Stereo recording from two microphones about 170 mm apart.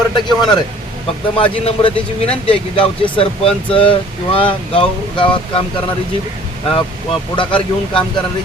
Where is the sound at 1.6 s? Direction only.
35° left (ahead or behind).